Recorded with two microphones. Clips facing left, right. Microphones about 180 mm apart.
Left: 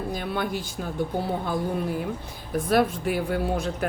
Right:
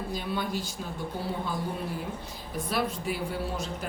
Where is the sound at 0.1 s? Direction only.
55° left (ahead or behind).